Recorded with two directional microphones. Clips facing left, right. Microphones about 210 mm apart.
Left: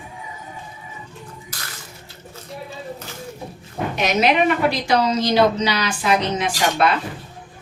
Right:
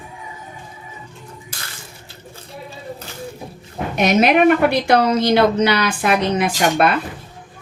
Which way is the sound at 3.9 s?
55° right (ahead or behind).